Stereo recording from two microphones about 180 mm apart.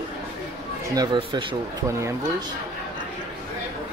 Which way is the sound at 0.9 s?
25° right (ahead or behind).